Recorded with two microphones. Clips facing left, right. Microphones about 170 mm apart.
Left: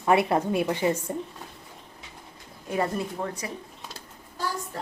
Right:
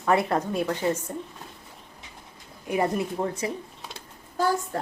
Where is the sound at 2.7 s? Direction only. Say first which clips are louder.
Right 2 dB; 15° right (ahead or behind).